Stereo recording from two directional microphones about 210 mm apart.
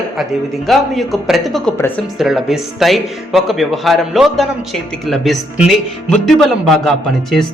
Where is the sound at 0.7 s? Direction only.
Centre (ahead or behind).